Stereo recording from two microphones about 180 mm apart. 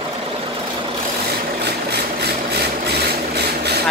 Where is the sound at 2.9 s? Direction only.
65° right (ahead or behind).